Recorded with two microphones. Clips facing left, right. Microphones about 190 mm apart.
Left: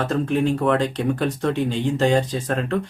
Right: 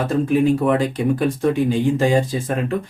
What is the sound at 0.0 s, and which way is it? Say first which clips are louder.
Speech: right 4 dB; 10° right (ahead or behind).